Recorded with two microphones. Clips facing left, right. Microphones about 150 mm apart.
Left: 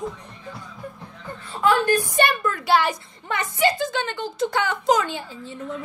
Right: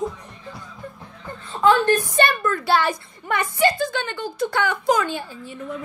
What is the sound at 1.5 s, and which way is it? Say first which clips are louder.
Whimper: right 3 dB; 25° right (ahead or behind).